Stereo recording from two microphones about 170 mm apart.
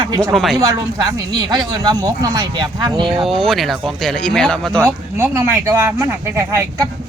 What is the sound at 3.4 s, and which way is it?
Speech, centre (ahead or behind).